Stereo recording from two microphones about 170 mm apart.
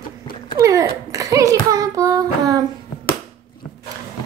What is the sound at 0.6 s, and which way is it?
A child's voice, 20° right (ahead or behind).